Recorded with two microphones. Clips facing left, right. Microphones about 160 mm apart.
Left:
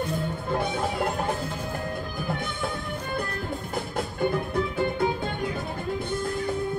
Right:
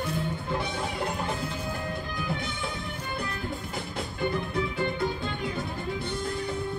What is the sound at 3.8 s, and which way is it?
Music, 50° left (ahead or behind).